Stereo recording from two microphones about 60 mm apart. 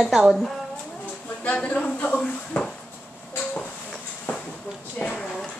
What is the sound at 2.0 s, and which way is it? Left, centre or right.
Drawer open or close, centre.